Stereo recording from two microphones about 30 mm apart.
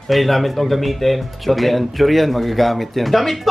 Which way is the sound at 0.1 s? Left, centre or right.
Centre.